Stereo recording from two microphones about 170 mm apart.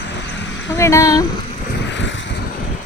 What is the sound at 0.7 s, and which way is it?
Speech, 15° left (ahead or behind).